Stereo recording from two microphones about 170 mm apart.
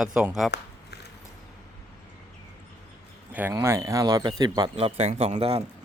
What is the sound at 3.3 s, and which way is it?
Speech, 10° right (ahead or behind).